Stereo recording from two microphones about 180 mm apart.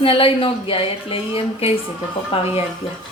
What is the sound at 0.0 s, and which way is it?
A woman's voice, 30° left (ahead or behind).